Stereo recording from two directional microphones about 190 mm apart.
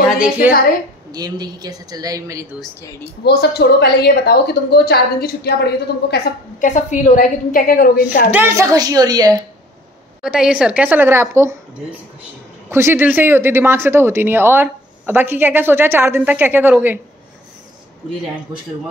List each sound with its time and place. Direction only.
1.1 s a woman's voice: 20° right (ahead or behind)
3.0 s a woman's voice: 60° left (ahead or behind)
6.6 s a woman's voice: 40° left (ahead or behind)
8.3 s a woman's voice: 15° right (ahead or behind)
10.2 s speech: 5° right (ahead or behind)
12.6 s speech: 10° right (ahead or behind)